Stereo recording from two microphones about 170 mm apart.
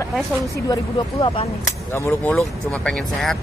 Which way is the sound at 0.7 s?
25° left (ahead or behind).